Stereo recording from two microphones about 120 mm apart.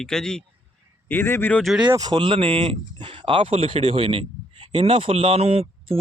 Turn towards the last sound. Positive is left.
turn(degrees=-50)  # may be behind; listen again after turning